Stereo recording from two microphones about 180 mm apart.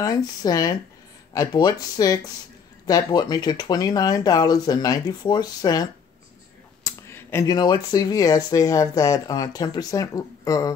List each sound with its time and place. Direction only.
0.0 s speech: 20° left (ahead or behind)